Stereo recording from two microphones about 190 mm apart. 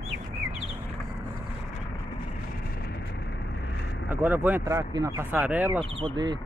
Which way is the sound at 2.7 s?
55° left (ahead or behind).